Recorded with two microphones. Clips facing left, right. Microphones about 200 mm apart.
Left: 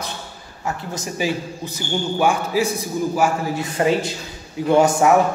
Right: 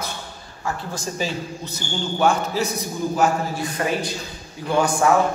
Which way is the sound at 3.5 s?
25° left (ahead or behind).